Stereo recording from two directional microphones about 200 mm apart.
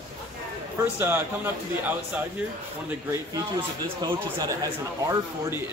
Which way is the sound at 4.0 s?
20° right (ahead or behind).